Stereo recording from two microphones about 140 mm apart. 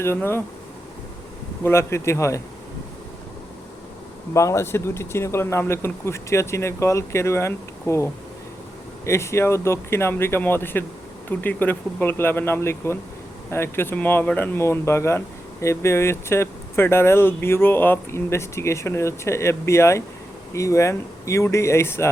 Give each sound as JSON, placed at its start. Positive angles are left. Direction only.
{"t": 0.0, "sound": "speech", "side_deg": 15}
{"t": 1.6, "sound": "speech", "side_deg": 20}
{"t": 4.4, "sound": "speech", "side_deg": 20}